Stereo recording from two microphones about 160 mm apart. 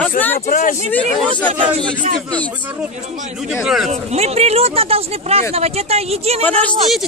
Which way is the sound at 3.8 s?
40° right (ahead or behind).